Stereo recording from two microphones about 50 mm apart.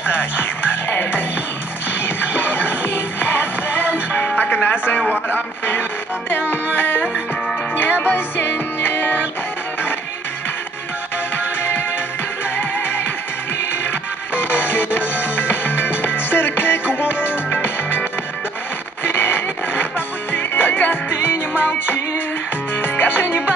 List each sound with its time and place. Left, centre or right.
0.1 s music: left
5.3 s speech: left
6.5 s music: left
11.3 s music: left
14.3 s music: left
19.0 s music: left